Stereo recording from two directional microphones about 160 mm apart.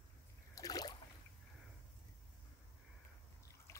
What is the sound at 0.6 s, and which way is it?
Boat, 25° left (ahead or behind).